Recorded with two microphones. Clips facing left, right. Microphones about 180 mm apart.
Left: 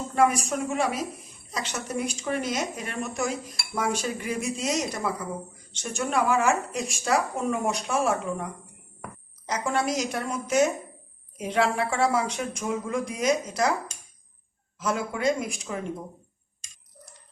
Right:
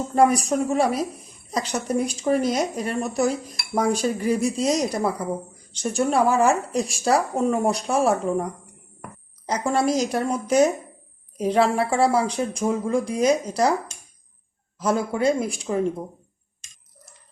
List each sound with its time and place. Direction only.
0.1 s a woman's voice: 35° right (ahead or behind)
9.5 s a woman's voice: 35° right (ahead or behind)
14.8 s a woman's voice: 35° right (ahead or behind)